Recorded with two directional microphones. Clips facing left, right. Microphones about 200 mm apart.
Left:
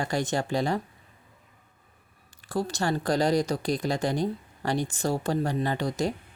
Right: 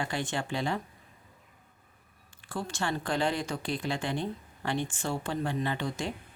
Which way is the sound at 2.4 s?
40° left (ahead or behind).